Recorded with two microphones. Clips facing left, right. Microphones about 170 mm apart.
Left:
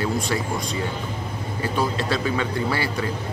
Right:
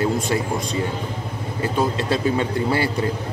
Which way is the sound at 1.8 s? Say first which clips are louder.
Right 3 dB; 25° right (ahead or behind).